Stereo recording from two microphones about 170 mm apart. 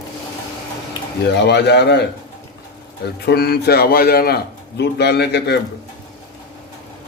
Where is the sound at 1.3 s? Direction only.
80° left.